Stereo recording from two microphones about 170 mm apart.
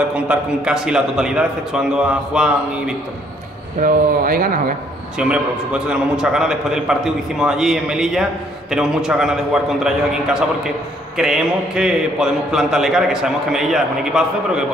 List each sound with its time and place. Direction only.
0.1 s a man's voice: 5° right (ahead or behind)
3.8 s speech: 55° right (ahead or behind)
5.1 s a man's voice: 5° right (ahead or behind)